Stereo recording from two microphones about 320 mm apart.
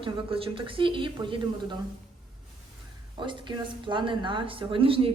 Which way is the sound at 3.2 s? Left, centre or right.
Centre.